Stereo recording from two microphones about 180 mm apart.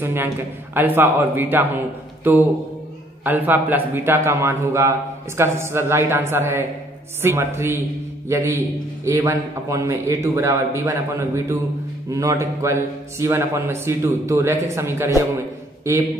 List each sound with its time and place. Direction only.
0.0 s speech: 10° right (ahead or behind)